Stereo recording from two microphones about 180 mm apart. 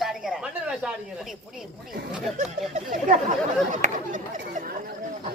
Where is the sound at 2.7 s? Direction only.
45° right (ahead or behind).